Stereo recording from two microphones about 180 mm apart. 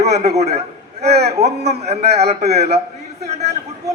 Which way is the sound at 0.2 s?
35° right (ahead or behind).